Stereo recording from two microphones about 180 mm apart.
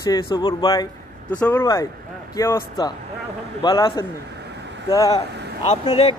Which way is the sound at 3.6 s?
25° left (ahead or behind).